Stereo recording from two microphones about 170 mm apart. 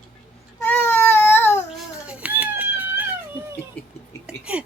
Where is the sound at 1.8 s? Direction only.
5° right (ahead or behind).